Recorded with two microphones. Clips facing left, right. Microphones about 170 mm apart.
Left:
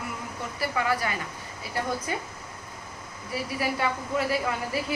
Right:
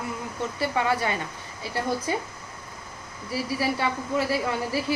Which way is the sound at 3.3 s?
30° right (ahead or behind).